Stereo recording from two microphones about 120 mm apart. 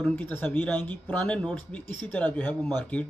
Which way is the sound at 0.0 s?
15° left (ahead or behind).